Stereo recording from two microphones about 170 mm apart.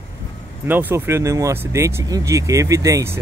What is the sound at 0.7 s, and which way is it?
Speech, 10° right (ahead or behind).